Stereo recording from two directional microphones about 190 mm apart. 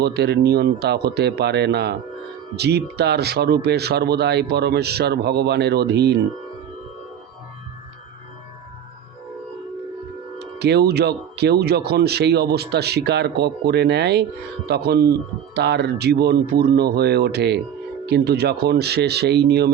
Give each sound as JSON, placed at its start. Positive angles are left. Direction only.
{"t": 0.0, "sound": "speech", "side_deg": -60}
{"t": 10.3, "sound": "speech", "side_deg": -60}